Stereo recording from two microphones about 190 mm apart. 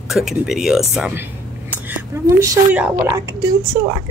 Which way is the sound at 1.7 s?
15° right (ahead or behind).